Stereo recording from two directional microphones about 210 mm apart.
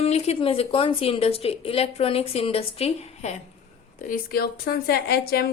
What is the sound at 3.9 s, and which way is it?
A woman's voice, 45° left (ahead or behind).